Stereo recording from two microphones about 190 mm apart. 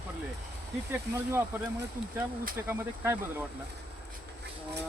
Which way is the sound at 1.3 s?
10° right (ahead or behind).